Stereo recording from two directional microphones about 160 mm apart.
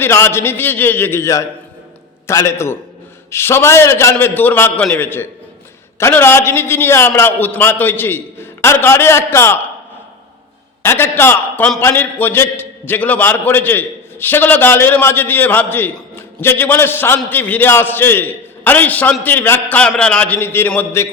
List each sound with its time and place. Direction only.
0.0 s a man's voice: 15° left (ahead or behind)
10.8 s a man's voice: 15° left (ahead or behind)